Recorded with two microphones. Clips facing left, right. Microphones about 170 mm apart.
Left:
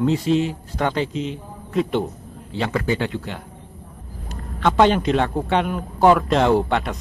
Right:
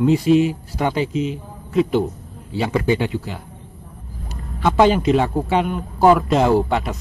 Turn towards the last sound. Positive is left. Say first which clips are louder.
# right 1 dB
turn(degrees=-5)  # may be behind; listen again after turning